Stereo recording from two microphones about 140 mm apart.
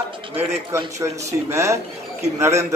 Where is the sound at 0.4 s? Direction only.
20° right (ahead or behind).